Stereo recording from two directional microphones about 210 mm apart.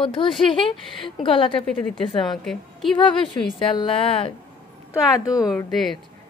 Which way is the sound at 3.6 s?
25° left (ahead or behind).